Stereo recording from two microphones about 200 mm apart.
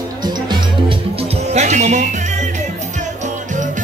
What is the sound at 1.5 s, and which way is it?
Music, 35° right (ahead or behind).